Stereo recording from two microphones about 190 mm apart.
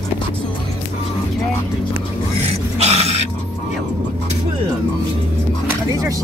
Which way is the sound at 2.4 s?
35° right (ahead or behind).